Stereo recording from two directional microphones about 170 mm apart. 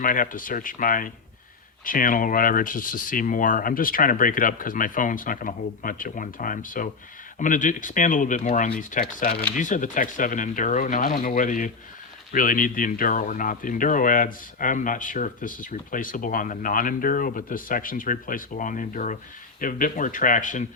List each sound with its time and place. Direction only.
0.0 s speech: 55° left (ahead or behind)
9.6 s speech: 50° left (ahead or behind)